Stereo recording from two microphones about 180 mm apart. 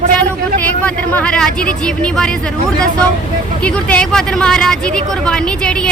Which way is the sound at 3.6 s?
5° left (ahead or behind).